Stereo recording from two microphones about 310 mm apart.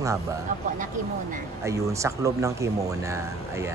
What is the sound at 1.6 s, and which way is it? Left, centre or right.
Speech, centre.